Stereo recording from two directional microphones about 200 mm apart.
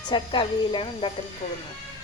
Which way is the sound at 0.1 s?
25° left (ahead or behind).